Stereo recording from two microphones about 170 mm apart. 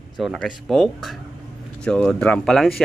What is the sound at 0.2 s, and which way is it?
Speech, centre (ahead or behind).